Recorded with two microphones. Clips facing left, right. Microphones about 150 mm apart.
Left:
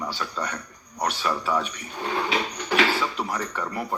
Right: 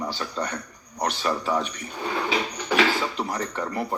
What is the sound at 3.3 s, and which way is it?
Speech, 35° right (ahead or behind).